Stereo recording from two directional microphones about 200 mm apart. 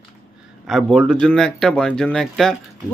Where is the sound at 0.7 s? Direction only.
Centre (ahead or behind).